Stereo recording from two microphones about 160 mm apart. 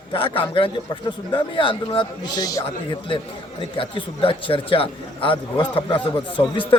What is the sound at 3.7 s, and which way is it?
Speech, 35° left (ahead or behind).